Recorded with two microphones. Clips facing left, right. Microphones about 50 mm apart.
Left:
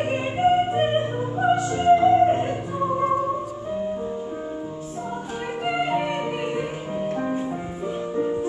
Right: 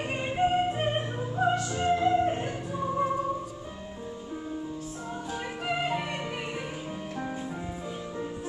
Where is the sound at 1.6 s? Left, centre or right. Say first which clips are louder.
Left 9 dB; left.